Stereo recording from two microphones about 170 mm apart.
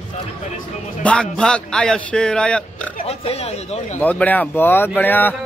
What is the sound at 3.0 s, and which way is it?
Speech, 35° left (ahead or behind).